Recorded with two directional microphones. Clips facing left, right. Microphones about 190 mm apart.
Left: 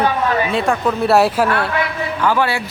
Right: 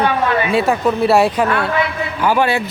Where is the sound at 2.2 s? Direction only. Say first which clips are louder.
Right 2 dB; 15° right (ahead or behind).